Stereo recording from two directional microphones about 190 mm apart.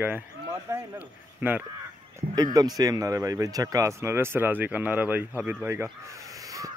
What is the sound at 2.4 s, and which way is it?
Speech, 20° right (ahead or behind).